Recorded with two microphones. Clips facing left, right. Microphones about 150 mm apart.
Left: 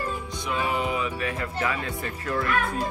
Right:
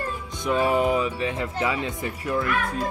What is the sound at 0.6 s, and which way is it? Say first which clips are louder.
Speech: right 6 dB; 40° right (ahead or behind).